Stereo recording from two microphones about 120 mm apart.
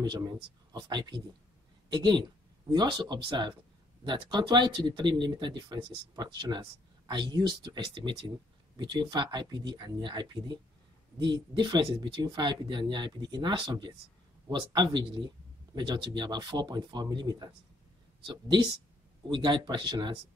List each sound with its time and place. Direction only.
0.0 s speech: 35° right (ahead or behind)